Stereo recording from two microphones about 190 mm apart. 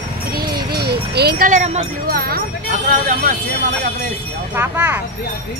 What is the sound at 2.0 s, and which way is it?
Speech, 50° right (ahead or behind).